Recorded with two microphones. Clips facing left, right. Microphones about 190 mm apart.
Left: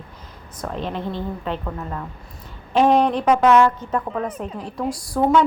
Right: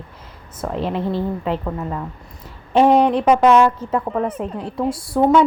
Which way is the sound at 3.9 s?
5° right (ahead or behind).